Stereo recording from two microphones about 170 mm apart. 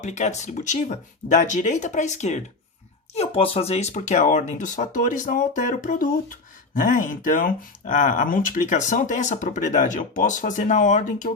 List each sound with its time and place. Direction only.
0.0 s speech: 45° left (ahead or behind)